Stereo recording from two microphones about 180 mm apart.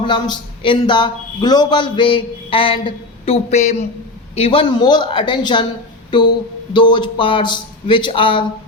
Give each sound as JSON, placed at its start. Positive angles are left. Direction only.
{"t": 0.0, "sound": "a man's voice", "side_deg": 25}